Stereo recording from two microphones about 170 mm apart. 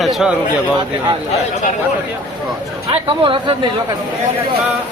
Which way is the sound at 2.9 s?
30° right (ahead or behind).